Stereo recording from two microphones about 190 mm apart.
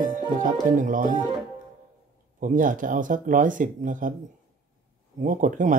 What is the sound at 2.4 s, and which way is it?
Speech, 45° right (ahead or behind).